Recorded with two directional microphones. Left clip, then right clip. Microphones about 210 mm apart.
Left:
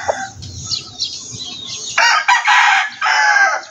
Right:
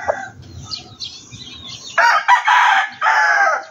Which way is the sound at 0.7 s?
40° left (ahead or behind).